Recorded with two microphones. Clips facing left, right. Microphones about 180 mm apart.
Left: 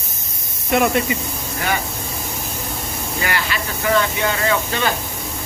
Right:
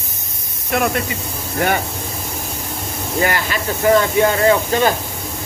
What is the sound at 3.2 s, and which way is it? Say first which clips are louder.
Speech: right 4 dB; 40° right (ahead or behind).